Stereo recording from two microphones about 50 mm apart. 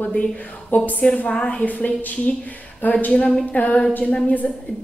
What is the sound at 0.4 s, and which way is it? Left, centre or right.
Speech, left.